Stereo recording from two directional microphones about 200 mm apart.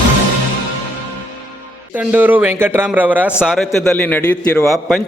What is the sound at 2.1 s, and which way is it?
A man's voice, 10° right (ahead or behind).